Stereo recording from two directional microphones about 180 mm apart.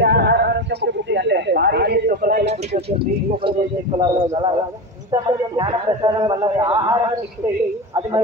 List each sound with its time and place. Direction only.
0.0 s speech: 70° right (ahead or behind); by 2.5 s 50° right (ahead or behind)
4.0 s speech: 25° right (ahead or behind)